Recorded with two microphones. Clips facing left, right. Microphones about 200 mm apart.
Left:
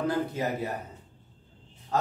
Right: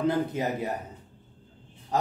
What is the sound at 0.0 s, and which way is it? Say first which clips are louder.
Speech: right 2 dB; 20° right (ahead or behind).